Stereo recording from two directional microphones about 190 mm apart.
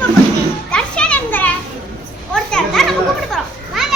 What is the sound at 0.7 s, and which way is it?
Children playing, 5° left (ahead or behind).